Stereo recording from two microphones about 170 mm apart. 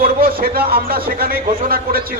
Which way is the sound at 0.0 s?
60° right (ahead or behind).